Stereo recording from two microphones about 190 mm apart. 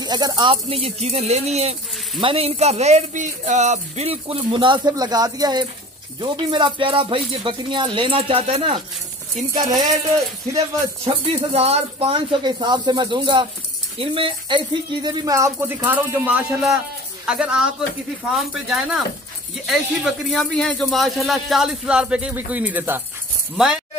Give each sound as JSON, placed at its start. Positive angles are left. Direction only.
{"t": 0.0, "sound": "speech", "side_deg": -20}
{"t": 11.1, "sound": "a man's voice", "side_deg": -30}